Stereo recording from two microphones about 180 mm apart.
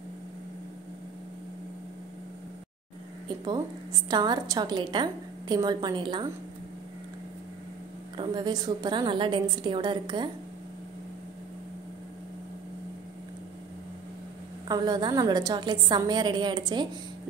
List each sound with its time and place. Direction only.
4.1 s a woman's voice: 20° right (ahead or behind)
8.2 s a woman's voice: 25° right (ahead or behind)
14.7 s a woman's voice: 20° right (ahead or behind)